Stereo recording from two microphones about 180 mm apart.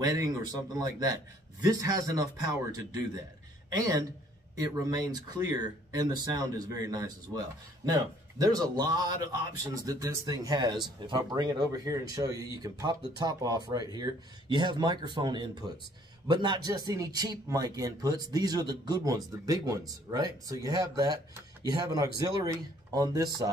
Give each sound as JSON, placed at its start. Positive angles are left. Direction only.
{"t": 0.0, "sound": "speech", "side_deg": -20}
{"t": 3.7, "sound": "speech", "side_deg": -20}